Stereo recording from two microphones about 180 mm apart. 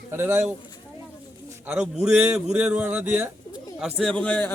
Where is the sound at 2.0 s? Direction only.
10° right (ahead or behind).